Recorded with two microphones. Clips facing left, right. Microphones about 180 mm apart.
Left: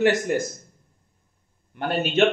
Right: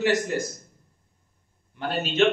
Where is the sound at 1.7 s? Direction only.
55° left (ahead or behind).